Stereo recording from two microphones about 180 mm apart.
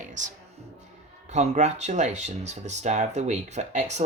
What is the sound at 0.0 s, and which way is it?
Music, 45° right (ahead or behind).